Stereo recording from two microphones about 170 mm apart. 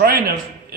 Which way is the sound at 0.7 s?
65° right (ahead or behind).